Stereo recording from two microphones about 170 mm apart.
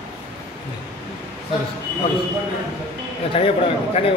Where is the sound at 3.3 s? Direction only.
35° left (ahead or behind).